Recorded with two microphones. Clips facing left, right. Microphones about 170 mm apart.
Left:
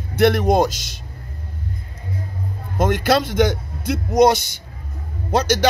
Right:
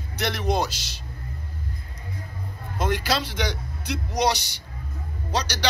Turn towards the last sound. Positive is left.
turn(degrees=50)  # may be behind; listen again after turning